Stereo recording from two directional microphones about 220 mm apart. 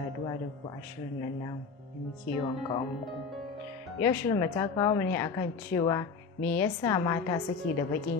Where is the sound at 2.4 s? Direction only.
20° left (ahead or behind).